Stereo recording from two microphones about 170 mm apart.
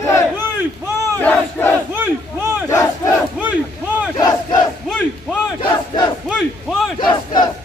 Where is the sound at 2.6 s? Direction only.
20° left (ahead or behind).